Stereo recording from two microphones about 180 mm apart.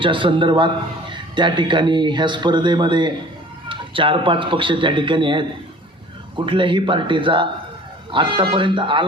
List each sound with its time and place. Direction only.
0.0 s speech: 30° right (ahead or behind)